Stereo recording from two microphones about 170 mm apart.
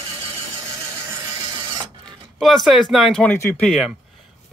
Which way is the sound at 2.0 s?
5° left (ahead or behind).